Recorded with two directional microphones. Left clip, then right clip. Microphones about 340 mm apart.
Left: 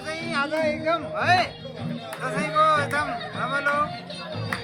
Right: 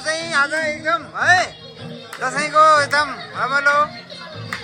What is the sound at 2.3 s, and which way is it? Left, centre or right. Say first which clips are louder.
Music: right 8 dB; centre.